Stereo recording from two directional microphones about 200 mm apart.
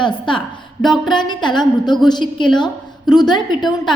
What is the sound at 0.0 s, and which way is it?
A woman's voice, 25° left (ahead or behind).